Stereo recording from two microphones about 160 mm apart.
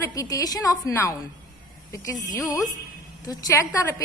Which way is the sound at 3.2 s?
25° left (ahead or behind).